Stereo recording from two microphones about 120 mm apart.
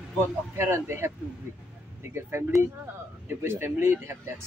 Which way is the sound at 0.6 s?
20° right (ahead or behind).